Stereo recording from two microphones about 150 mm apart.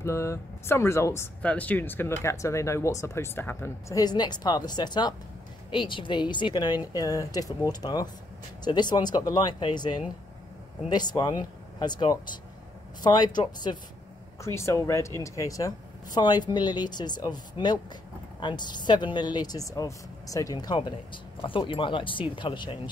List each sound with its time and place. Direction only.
0.0 s speech: 20° left (ahead or behind)
4.0 s speech: 30° left (ahead or behind)